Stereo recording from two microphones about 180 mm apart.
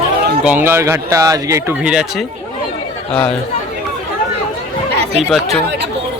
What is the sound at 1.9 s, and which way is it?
Speech, 5° right (ahead or behind).